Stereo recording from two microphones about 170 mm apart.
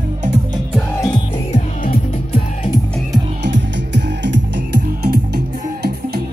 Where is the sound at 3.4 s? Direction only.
90° right.